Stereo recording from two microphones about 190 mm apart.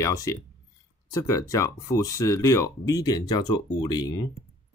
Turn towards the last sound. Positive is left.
turn(degrees=20)  # may be behind; listen again after turning